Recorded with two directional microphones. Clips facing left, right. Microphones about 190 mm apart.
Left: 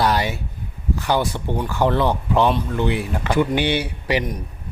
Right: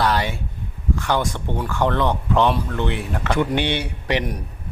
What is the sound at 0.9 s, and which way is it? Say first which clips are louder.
Speech: left 2 dB; 10° left (ahead or behind).